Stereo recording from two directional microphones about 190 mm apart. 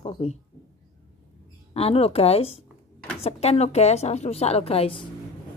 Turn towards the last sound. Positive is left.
turn(degrees=30)  # may be behind; listen again after turning